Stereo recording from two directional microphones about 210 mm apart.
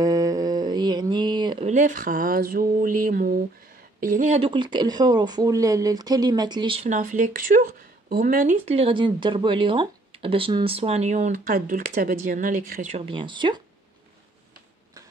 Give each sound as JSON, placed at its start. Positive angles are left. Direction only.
{"t": 0.0, "sound": "mantra", "side_deg": -15}
{"t": 1.7, "sound": "speech", "side_deg": -40}
{"t": 12.9, "sound": "speech", "side_deg": -25}